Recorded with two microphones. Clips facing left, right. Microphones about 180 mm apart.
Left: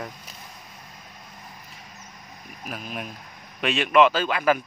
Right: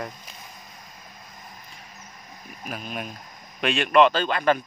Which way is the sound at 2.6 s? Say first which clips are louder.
Right 1 dB; centre (ahead or behind).